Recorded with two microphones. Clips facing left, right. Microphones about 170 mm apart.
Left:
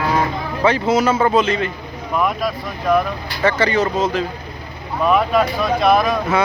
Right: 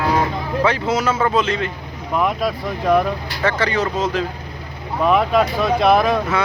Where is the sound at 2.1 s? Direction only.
25° right (ahead or behind).